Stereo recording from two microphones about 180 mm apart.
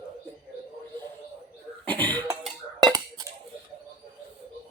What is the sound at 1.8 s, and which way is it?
Cough, 10° left (ahead or behind).